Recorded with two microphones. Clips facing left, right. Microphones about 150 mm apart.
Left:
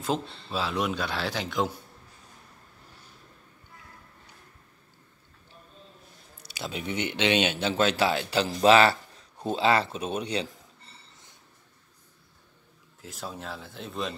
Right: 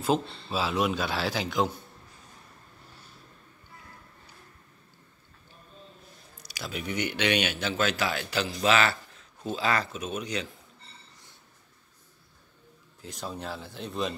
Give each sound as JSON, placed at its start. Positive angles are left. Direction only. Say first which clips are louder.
{"t": 0.0, "sound": "a man's voice", "louder": "right 3 dB", "side_deg": -5}
{"t": 6.4, "sound": "speech", "louder": "left 1 dB", "side_deg": 25}
{"t": 13.0, "sound": "a man's voice", "louder": "right 1 dB", "side_deg": 0}